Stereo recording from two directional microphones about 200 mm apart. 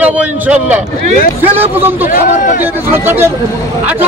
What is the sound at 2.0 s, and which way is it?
Speech, 40° left (ahead or behind).